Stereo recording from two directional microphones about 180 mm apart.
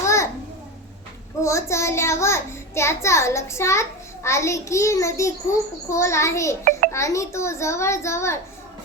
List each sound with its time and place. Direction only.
0.0 s a sound: 15° left (ahead or behind)
1.4 s a child's voice: 15° left (ahead or behind)
6.7 s music: 50° right (ahead or behind)
6.9 s a child's voice: 15° left (ahead or behind)